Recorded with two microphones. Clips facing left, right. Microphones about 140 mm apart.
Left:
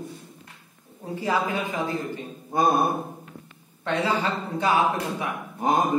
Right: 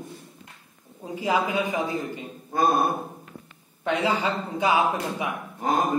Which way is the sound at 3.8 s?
15° right (ahead or behind).